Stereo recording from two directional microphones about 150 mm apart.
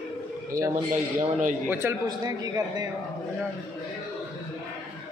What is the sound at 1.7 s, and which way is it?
A man's voice, 15° right (ahead or behind).